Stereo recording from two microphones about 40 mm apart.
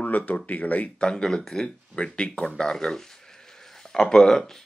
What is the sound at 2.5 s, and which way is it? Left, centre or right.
A man's voice, centre.